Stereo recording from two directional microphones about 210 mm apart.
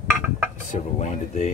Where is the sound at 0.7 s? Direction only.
35° left (ahead or behind).